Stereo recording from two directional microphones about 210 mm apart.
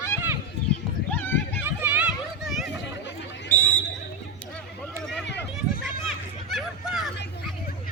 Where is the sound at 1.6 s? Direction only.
10° right (ahead or behind).